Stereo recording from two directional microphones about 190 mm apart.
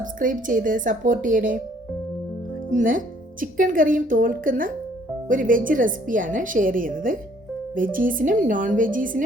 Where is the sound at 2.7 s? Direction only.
45° right (ahead or behind).